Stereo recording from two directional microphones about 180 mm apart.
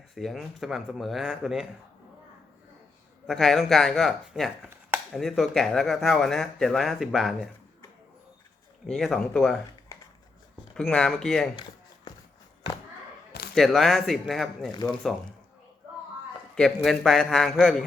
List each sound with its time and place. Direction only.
0.1 s speech: centre (ahead or behind)
3.2 s speech: centre (ahead or behind)
8.9 s speech: centre (ahead or behind)
10.8 s speech: centre (ahead or behind)
11.5 s a sound: 25° left (ahead or behind)
13.5 s speech: centre (ahead or behind)
16.6 s speech: centre (ahead or behind)